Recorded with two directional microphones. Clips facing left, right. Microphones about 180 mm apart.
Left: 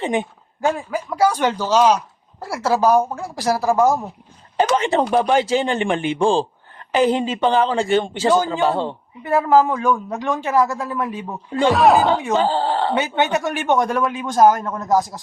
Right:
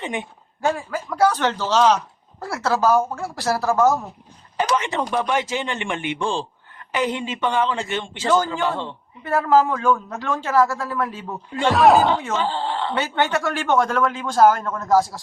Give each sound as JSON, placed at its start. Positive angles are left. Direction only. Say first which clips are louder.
{"t": 0.0, "sound": "speech", "louder": "left 7 dB", "side_deg": 30}
{"t": 0.6, "sound": "a man's voice", "louder": "left 2 dB", "side_deg": 15}
{"t": 4.5, "sound": "a man's voice", "louder": "left 5 dB", "side_deg": 35}
{"t": 9.2, "sound": "a man's voice", "louder": "left 2 dB", "side_deg": 15}
{"t": 11.7, "sound": "speech", "louder": "even", "side_deg": 0}
{"t": 12.3, "sound": "speech", "louder": "left 5 dB", "side_deg": 35}
{"t": 12.9, "sound": "a man's voice", "louder": "left 3 dB", "side_deg": 20}